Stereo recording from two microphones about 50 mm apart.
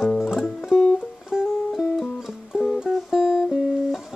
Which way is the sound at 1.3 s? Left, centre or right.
Centre.